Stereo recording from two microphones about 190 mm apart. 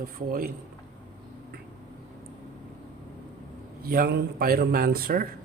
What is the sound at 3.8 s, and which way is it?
A man's voice, 50° right (ahead or behind).